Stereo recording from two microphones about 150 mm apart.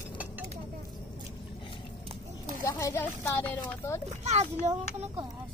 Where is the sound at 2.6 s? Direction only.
20° left (ahead or behind).